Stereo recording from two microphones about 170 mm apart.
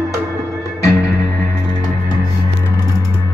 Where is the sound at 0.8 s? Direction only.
20° left (ahead or behind).